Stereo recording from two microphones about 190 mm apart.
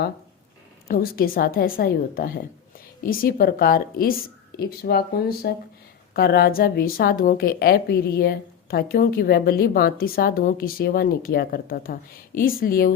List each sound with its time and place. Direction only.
0.9 s a woman's voice: 50° left (ahead or behind)